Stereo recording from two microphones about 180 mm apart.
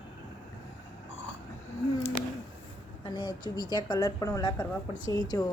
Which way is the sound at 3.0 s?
25° left (ahead or behind).